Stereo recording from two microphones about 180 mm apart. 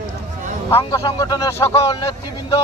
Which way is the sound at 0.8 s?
25° left (ahead or behind).